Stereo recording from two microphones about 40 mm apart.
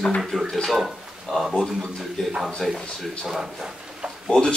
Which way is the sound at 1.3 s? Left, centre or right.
Centre.